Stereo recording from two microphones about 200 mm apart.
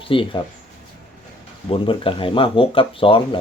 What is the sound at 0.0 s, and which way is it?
Speech, 25° left (ahead or behind).